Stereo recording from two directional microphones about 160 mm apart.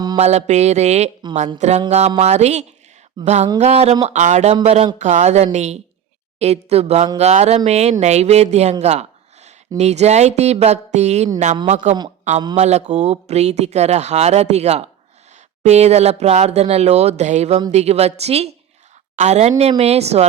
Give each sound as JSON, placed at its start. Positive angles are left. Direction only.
{"t": 0.2, "sound": "a woman's voice", "side_deg": -45}